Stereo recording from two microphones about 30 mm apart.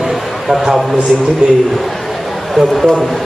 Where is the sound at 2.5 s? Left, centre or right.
Centre.